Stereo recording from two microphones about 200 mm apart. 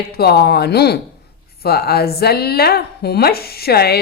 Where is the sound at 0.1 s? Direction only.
50° left (ahead or behind).